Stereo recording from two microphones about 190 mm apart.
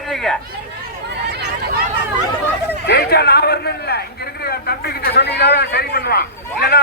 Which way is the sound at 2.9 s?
55° left (ahead or behind).